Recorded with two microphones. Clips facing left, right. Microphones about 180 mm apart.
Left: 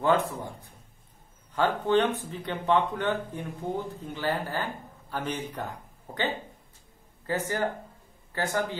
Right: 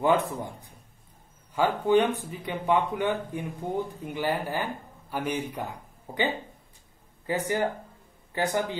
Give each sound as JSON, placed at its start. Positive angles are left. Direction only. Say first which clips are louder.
{"t": 0.0, "sound": "a man's voice", "louder": "right 1 dB", "side_deg": -15}